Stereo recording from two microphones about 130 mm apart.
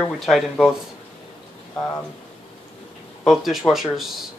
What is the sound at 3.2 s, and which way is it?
Speech, centre (ahead or behind).